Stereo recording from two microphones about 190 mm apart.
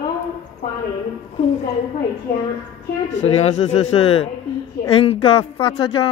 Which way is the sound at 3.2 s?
35° left (ahead or behind).